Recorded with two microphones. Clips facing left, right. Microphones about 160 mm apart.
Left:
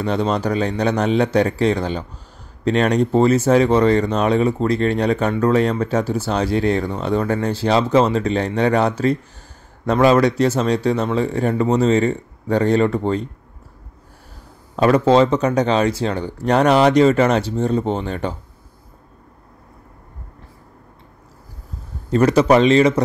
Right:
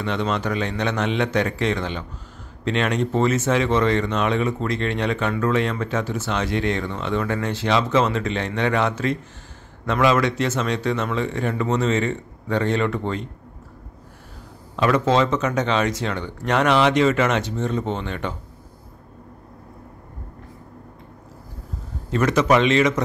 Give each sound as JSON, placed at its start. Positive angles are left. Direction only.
{"t": 0.0, "sound": "speech", "side_deg": 35}
{"t": 14.8, "sound": "speech", "side_deg": 35}
{"t": 22.1, "sound": "speech", "side_deg": 35}